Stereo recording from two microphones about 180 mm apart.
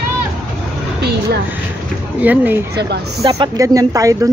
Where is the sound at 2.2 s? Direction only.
10° right (ahead or behind).